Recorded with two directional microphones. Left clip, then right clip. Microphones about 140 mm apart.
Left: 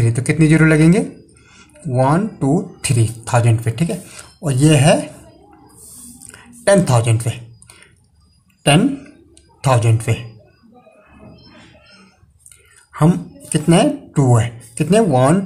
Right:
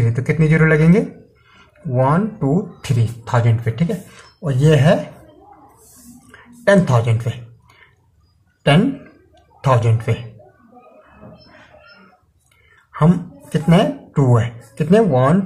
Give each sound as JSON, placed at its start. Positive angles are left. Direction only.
{"t": 0.0, "sound": "speech", "side_deg": 25}
{"t": 6.3, "sound": "typing", "side_deg": 25}
{"t": 9.6, "sound": "speech", "side_deg": 20}
{"t": 12.9, "sound": "speech", "side_deg": 25}